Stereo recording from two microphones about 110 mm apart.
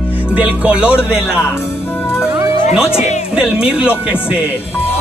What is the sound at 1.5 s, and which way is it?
Music, 20° left (ahead or behind).